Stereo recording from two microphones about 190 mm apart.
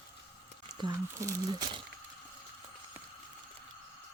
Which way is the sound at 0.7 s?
20° right (ahead or behind).